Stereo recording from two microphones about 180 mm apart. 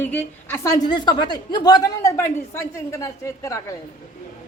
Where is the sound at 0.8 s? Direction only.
25° left (ahead or behind).